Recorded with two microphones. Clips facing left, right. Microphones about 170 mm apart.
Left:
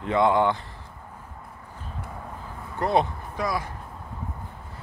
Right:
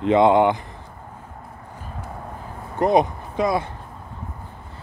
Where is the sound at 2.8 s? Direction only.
15° right (ahead or behind).